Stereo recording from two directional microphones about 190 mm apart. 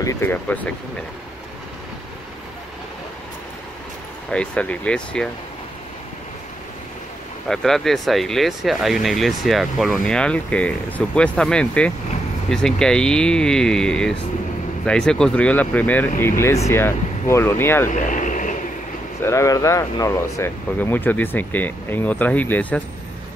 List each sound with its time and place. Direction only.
0.0 s speech: 10° left (ahead or behind)
4.3 s speech: 5° left (ahead or behind)
7.4 s speech: centre (ahead or behind)
17.8 s vehicle: 45° left (ahead or behind)
19.2 s speech: 15° left (ahead or behind)